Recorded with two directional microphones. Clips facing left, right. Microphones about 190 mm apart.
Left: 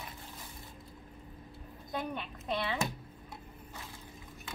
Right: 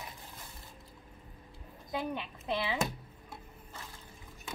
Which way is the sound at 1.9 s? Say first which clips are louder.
Right 2 dB; 10° right (ahead or behind).